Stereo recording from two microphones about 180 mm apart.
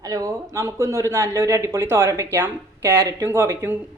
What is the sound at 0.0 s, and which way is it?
Speech, 20° right (ahead or behind).